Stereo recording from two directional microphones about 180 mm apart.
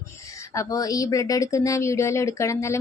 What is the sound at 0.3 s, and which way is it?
Speech, 15° left (ahead or behind).